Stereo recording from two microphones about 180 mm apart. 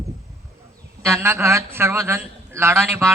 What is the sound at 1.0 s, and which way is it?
A man's voice, 15° right (ahead or behind).